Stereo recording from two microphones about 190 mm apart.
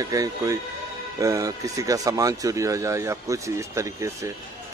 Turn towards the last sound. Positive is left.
turn(degrees=-15)  # may be behind; listen again after turning